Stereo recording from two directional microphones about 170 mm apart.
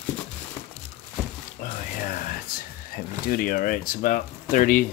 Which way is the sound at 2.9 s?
60° left (ahead or behind).